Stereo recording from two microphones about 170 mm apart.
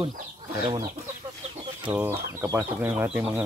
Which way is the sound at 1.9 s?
10° right (ahead or behind).